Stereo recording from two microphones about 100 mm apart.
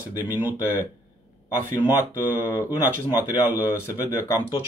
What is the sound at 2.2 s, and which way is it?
A man's voice, 25° left (ahead or behind).